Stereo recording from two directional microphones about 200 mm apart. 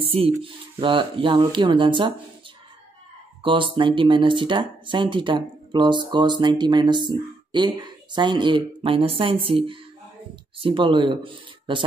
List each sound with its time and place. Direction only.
0.1 s speech: 25° right (ahead or behind)
3.4 s speech: 25° right (ahead or behind)